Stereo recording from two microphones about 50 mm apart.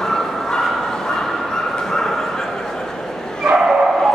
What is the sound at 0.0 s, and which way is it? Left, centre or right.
Dog, centre.